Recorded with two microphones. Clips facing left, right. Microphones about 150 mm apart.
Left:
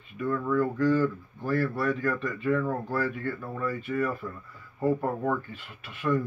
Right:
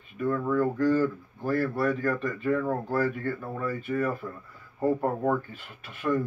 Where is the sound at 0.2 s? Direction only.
30° right (ahead or behind).